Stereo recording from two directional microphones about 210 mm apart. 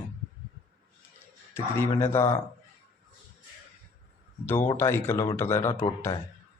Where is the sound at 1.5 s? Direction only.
10° left (ahead or behind).